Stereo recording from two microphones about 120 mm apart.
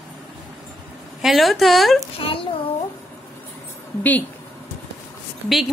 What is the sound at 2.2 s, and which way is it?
Speech, 50° left (ahead or behind).